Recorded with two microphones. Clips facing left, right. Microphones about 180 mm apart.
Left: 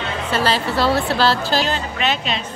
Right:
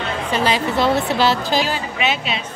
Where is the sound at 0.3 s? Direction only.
15° right (ahead or behind).